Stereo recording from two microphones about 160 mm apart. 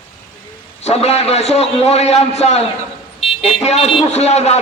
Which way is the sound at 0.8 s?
40° left (ahead or behind).